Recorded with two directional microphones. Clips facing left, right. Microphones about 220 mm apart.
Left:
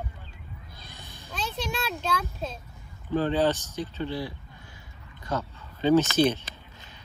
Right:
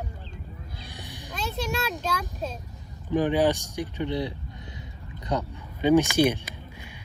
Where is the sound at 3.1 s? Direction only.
15° right (ahead or behind).